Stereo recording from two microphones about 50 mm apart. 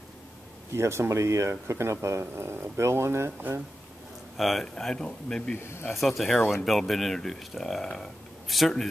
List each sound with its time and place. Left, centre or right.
0.7 s speech: right
2.3 s speech: right
2.8 s speech: right
4.4 s speech: centre
5.0 s speech: left
5.6 s speech: left
5.9 s speech: centre